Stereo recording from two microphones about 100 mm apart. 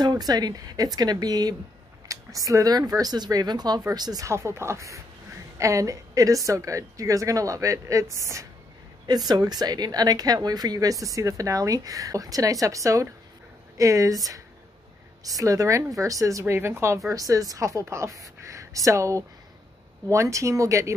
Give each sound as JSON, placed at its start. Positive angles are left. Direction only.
{"t": 0.0, "sound": "speech", "side_deg": -40}
{"t": 4.3, "sound": "speech", "side_deg": -25}
{"t": 9.0, "sound": "speech", "side_deg": -45}